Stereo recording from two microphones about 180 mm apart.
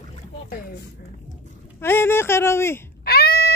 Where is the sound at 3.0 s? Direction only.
60° left (ahead or behind).